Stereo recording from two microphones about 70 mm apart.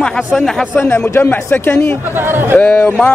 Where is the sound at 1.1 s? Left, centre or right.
Left.